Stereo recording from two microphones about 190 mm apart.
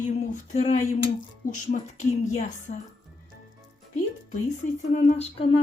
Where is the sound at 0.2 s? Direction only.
35° left (ahead or behind).